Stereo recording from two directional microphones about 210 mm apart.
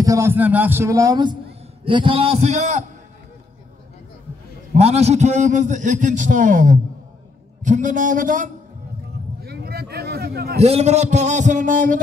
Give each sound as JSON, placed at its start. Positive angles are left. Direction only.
{"t": 0.0, "sound": "a man's voice", "side_deg": -15}
{"t": 4.7, "sound": "a man's voice", "side_deg": -30}
{"t": 9.4, "sound": "a sound", "side_deg": -50}
{"t": 10.6, "sound": "a man's voice", "side_deg": -30}